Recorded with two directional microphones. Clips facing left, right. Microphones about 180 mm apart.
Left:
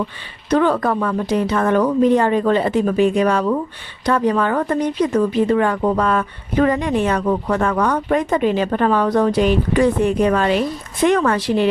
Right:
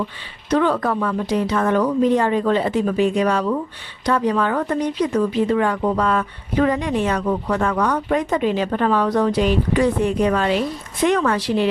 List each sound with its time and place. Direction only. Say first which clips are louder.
0.5 s speech: left 2 dB; 50° left (ahead or behind)